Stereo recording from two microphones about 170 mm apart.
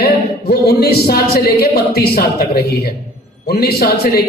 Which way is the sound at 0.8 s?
65° left (ahead or behind).